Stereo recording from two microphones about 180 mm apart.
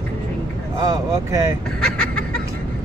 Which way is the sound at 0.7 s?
20° right (ahead or behind).